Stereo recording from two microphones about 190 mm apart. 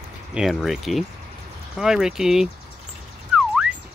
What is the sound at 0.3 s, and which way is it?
Speech, centre (ahead or behind).